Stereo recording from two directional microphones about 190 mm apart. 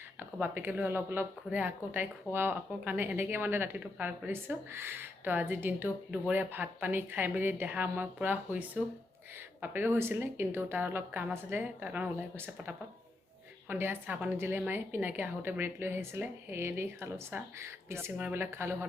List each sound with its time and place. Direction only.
0.3 s a woman's voice: 10° right (ahead or behind)